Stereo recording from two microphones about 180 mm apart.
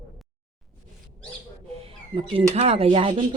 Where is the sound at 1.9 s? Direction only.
30° right (ahead or behind).